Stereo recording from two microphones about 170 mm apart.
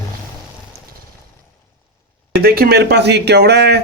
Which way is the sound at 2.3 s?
70° right (ahead or behind).